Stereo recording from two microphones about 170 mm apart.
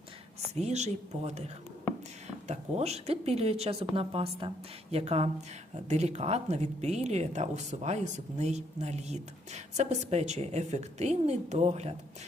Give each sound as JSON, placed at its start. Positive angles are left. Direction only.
{"t": 0.5, "sound": "speech", "side_deg": -40}